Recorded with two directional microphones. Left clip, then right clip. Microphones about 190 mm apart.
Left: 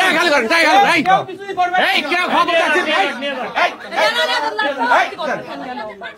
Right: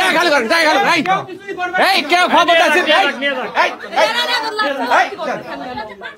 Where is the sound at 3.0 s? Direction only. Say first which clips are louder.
Right 3 dB; 35° right (ahead or behind).